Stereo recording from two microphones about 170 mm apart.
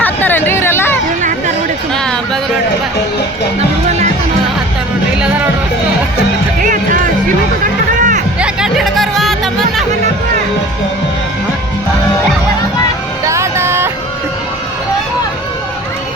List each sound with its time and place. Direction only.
0.0 s a sound: 10° left (ahead or behind)
3.8 s music: 40° right (ahead or behind)
6.6 s music: 50° right (ahead or behind)
8.4 s music: 5° right (ahead or behind)
13.2 s music: 15° right (ahead or behind)